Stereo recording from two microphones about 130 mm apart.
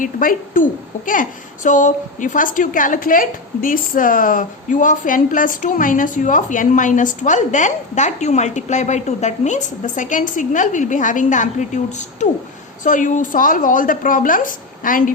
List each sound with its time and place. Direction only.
0.0 s a woman's voice: 90° left; by 12.3 s 65° left (ahead or behind)
12.8 s a woman's voice: 80° left